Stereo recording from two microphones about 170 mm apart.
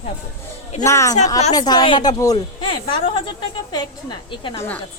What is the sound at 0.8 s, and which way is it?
A woman's voice, 15° left (ahead or behind).